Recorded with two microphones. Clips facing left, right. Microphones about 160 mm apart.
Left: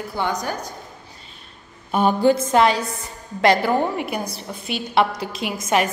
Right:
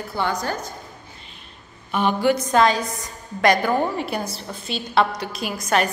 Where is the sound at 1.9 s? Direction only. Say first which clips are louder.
Left 3 dB; 40° left (ahead or behind).